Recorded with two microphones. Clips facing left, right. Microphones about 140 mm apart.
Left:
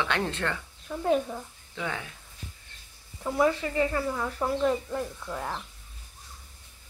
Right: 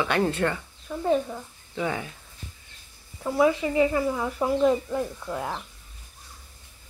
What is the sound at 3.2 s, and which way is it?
Speech, 5° right (ahead or behind).